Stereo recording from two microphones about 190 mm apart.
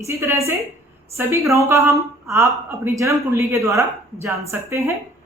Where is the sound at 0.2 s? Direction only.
15° right (ahead or behind).